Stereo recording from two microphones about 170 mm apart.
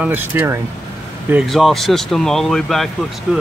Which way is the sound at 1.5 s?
Centre (ahead or behind).